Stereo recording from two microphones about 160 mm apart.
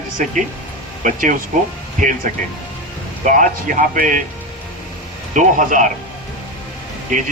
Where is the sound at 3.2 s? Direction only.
55° right (ahead or behind).